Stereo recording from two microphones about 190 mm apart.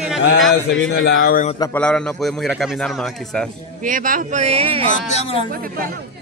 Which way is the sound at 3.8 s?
45° right (ahead or behind).